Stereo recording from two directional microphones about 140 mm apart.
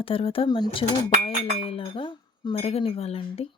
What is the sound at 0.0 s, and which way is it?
Speech, 40° left (ahead or behind).